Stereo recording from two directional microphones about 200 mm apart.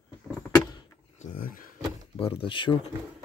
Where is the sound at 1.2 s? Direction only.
45° left (ahead or behind).